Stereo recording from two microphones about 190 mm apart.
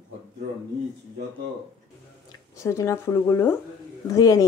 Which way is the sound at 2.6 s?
15° left (ahead or behind).